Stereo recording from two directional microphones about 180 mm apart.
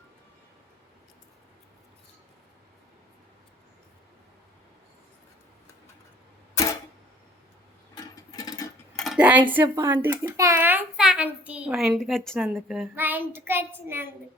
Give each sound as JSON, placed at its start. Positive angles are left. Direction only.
{"t": 6.5, "sound": "a sound", "side_deg": 15}
{"t": 7.9, "sound": "sewing machine", "side_deg": 20}
{"t": 9.0, "sound": "cutlery", "side_deg": -5}
{"t": 9.5, "sound": "speech", "side_deg": -10}
{"t": 13.0, "sound": "speech", "side_deg": -10}